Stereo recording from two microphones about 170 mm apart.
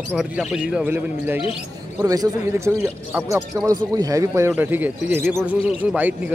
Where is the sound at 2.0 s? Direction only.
20° right (ahead or behind).